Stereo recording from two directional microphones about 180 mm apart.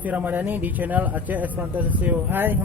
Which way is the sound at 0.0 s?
10° right (ahead or behind).